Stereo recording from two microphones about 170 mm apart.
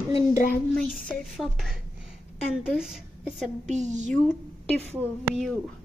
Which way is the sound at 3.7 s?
45° right (ahead or behind).